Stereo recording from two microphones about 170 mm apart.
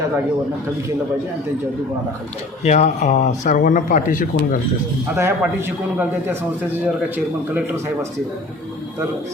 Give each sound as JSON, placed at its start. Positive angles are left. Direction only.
{"t": 2.6, "sound": "speech", "side_deg": 40}
{"t": 5.1, "sound": "a man's voice", "side_deg": -15}
{"t": 7.5, "sound": "a man's voice", "side_deg": -10}